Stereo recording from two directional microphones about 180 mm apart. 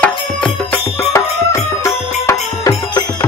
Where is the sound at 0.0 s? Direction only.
10° left (ahead or behind).